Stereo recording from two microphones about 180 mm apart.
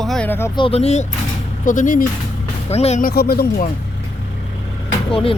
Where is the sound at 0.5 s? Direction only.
30° left (ahead or behind); by 2.1 s 45° left (ahead or behind).